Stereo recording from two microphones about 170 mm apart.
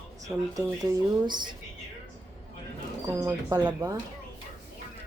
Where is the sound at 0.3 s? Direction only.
15° right (ahead or behind).